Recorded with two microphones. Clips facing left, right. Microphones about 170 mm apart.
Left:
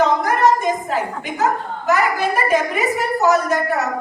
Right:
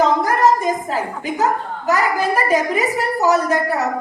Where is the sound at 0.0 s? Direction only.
35° right (ahead or behind).